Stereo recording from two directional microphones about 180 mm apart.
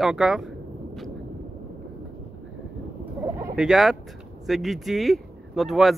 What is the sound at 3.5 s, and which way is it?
Speech, centre (ahead or behind).